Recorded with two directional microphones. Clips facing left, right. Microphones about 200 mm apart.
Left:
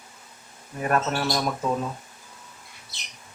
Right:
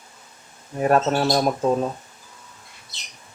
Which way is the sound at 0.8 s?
30° right (ahead or behind).